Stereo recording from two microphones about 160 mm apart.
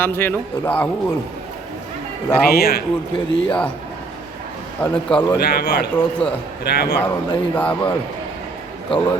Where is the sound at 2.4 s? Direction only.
75° left (ahead or behind).